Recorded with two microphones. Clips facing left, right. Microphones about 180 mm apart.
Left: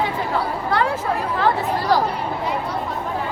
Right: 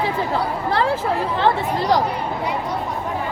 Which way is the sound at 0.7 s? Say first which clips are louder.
Right 1 dB; 30° right (ahead or behind).